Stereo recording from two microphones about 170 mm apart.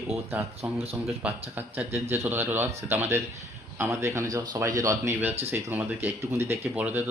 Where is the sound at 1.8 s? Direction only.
40° right (ahead or behind).